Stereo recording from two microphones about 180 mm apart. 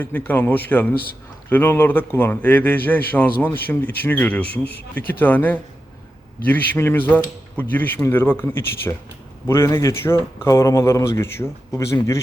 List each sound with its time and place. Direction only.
0.0 s speech: 10° left (ahead or behind)